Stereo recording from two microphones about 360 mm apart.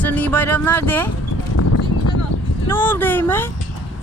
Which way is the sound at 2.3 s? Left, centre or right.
Left.